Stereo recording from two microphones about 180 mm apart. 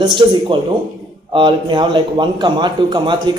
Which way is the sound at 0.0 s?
25° right (ahead or behind).